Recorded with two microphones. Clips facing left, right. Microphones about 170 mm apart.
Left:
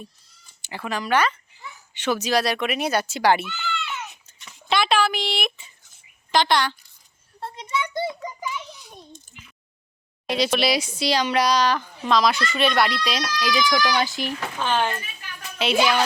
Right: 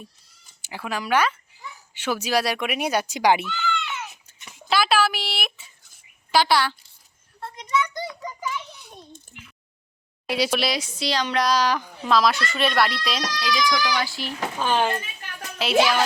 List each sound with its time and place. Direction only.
0.6 s speech: 10° right (ahead or behind)
3.4 s a sound: centre (ahead or behind)
6.3 s speech: 5° right (ahead or behind)
7.3 s a sound: 30° left (ahead or behind)
9.3 s speech: 60° right (ahead or behind)
10.2 s speech: 10° right (ahead or behind)
10.7 s speech: 10° left (ahead or behind)
11.5 s speech: 10° right (ahead or behind)
13.4 s a child's voice: 15° left (ahead or behind)
14.6 s speech: 10° right (ahead or behind)